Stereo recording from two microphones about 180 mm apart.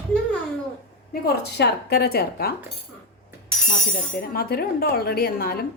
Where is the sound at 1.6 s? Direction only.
65° left (ahead or behind).